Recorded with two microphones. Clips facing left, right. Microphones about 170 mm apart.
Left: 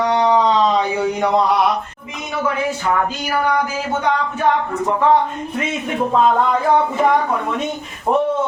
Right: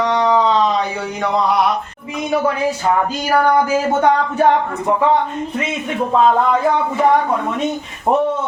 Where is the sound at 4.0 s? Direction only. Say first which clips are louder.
Right 3 dB; 50° right (ahead or behind).